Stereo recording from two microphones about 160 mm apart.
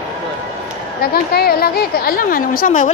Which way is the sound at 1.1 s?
80° left.